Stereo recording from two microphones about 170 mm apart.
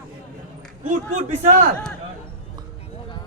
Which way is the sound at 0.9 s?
45° right (ahead or behind).